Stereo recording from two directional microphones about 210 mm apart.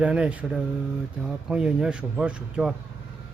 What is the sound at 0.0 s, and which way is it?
Speech, 5° right (ahead or behind).